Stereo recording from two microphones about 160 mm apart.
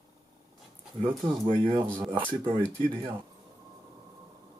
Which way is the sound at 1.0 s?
30° right (ahead or behind).